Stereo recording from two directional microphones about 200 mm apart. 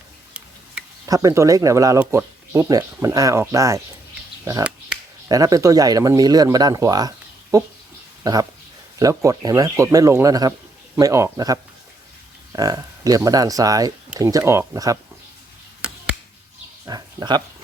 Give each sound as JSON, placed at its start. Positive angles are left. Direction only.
{"t": 1.0, "sound": "speech", "side_deg": -15}
{"t": 5.3, "sound": "speech", "side_deg": -15}
{"t": 16.8, "sound": "speech", "side_deg": -20}